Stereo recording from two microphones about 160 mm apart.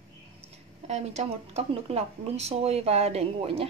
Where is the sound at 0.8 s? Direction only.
40° right (ahead or behind).